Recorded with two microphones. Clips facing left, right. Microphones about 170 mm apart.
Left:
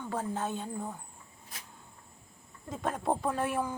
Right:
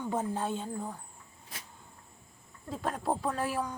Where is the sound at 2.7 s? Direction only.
Centre (ahead or behind).